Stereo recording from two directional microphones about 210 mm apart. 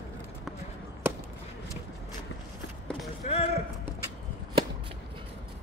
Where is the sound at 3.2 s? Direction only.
30° left (ahead or behind).